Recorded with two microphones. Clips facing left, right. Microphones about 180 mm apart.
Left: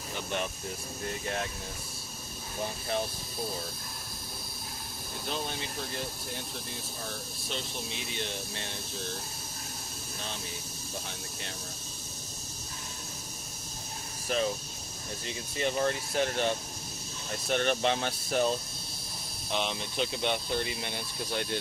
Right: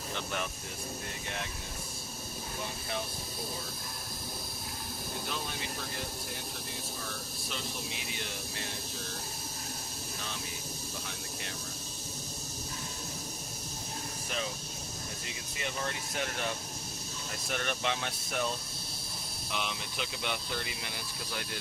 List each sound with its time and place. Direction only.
8.1 s speech: 25° left (ahead or behind)
15.5 s speech: 35° left (ahead or behind)